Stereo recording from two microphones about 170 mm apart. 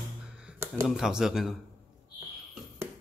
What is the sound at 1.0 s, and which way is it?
Speech, 5° right (ahead or behind).